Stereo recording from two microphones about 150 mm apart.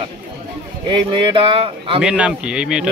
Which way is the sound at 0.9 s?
35° right (ahead or behind).